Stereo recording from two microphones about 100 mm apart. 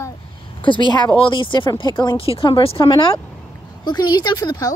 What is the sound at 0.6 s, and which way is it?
Speech, 55° left (ahead or behind).